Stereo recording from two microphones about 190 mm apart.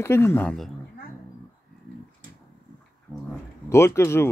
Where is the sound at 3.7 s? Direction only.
15° left (ahead or behind).